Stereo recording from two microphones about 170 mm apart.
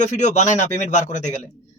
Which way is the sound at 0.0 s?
45° left (ahead or behind).